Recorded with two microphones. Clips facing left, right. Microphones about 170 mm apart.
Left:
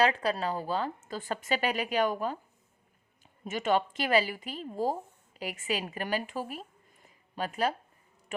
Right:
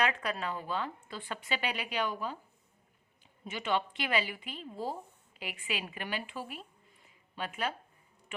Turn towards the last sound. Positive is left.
turn(degrees=40)  # may be behind; listen again after turning